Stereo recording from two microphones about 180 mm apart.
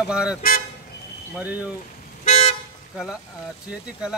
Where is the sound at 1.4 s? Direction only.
10° right (ahead or behind).